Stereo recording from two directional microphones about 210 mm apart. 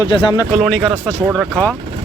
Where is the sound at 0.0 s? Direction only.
20° left (ahead or behind).